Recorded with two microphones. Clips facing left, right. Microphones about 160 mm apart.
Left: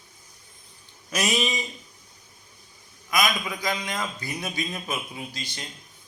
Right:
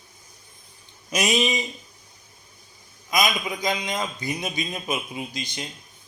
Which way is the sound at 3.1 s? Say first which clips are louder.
Right 1 dB; 20° right (ahead or behind).